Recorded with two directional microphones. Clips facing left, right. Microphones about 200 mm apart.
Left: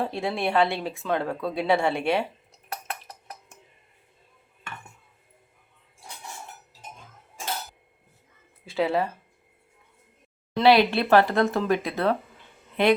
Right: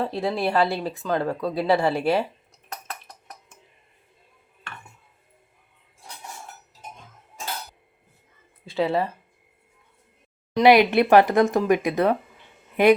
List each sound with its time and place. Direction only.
0.0 s speech: centre (ahead or behind)
8.6 s speech: centre (ahead or behind)
10.6 s a woman's voice: 15° right (ahead or behind)